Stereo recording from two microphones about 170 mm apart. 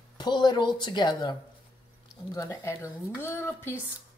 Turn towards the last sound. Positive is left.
turn(degrees=15)  # may be behind; listen again after turning